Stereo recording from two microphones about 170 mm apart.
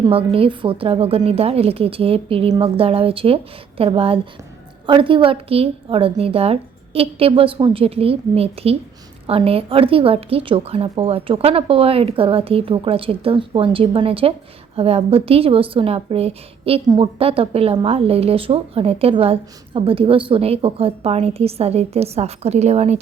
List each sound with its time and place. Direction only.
0.0 s a woman's voice: 35° right (ahead or behind)